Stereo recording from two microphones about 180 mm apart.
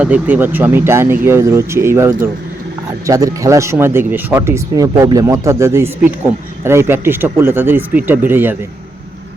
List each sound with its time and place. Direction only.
0.0 s speech: 10° right (ahead or behind)